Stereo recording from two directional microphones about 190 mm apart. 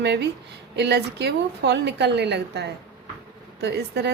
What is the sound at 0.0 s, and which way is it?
A woman's voice, 60° right (ahead or behind).